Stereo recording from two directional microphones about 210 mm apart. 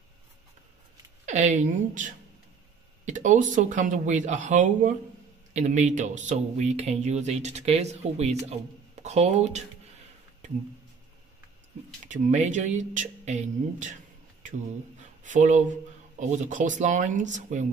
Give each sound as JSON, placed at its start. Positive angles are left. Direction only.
{"t": 1.2, "sound": "speech", "side_deg": -35}
{"t": 12.1, "sound": "speech", "side_deg": -35}
{"t": 15.2, "sound": "speech", "side_deg": -35}